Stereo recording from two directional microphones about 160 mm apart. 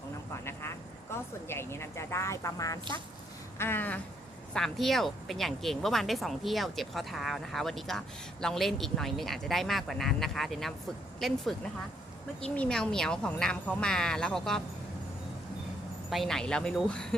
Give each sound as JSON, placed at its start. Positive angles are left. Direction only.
{"t": 1.1, "sound": "a sound", "side_deg": 15}
{"t": 4.5, "sound": "speech", "side_deg": 0}
{"t": 12.5, "sound": "speech", "side_deg": 5}
{"t": 16.0, "sound": "speech", "side_deg": 0}